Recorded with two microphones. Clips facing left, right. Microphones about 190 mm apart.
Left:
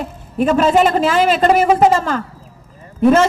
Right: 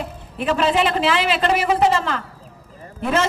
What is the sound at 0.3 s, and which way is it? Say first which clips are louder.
A man's voice: left 6 dB; 45° left (ahead or behind).